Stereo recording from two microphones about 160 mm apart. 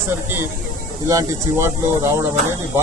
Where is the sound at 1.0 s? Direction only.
20° right (ahead or behind).